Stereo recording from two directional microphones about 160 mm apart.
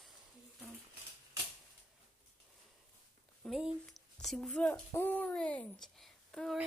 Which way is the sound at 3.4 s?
Centre (ahead or behind).